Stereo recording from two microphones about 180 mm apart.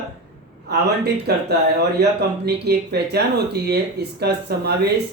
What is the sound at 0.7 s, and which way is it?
Speech, 65° right (ahead or behind).